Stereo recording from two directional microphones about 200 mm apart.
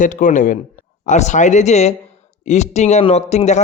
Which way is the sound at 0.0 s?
40° left (ahead or behind).